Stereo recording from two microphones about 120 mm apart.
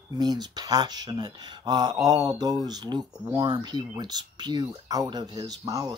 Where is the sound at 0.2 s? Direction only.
35° right (ahead or behind).